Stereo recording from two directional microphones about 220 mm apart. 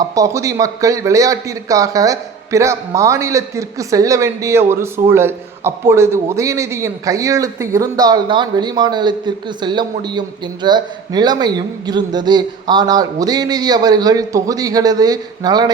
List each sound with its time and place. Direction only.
0.1 s a man's voice: 15° right (ahead or behind)